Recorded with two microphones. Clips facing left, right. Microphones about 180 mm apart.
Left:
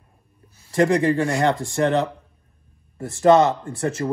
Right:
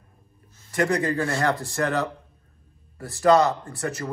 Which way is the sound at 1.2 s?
20° left (ahead or behind).